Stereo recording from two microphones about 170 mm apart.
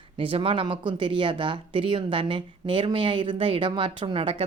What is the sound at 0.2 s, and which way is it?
Speech, 30° right (ahead or behind).